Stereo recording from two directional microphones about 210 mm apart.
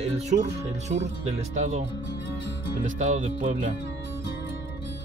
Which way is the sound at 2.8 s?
35° right (ahead or behind).